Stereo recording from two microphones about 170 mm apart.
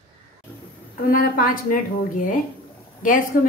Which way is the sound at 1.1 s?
55° left (ahead or behind).